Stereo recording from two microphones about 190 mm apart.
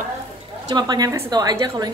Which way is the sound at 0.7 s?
20° right (ahead or behind).